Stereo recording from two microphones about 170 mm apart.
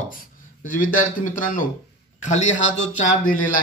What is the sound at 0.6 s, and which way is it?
Speech, 50° left (ahead or behind).